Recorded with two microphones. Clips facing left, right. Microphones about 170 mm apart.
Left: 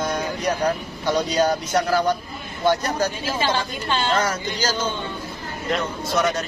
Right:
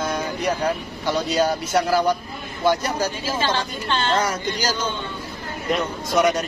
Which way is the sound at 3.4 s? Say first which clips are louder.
Left 2 dB; 10° left (ahead or behind).